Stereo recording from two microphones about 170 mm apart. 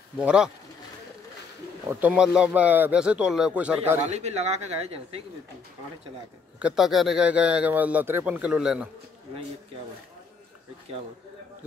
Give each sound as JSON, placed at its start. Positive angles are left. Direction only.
{"t": 0.2, "sound": "speech", "side_deg": -5}
{"t": 1.9, "sound": "a man's voice", "side_deg": -10}
{"t": 4.0, "sound": "speech", "side_deg": -40}
{"t": 6.6, "sound": "a man's voice", "side_deg": -5}